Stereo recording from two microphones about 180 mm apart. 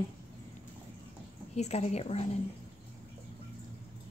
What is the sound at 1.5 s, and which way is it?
Speech, 35° left (ahead or behind).